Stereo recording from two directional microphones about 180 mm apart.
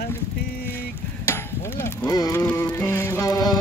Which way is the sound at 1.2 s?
15° left (ahead or behind).